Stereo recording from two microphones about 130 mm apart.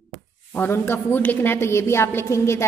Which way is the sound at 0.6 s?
15° left (ahead or behind).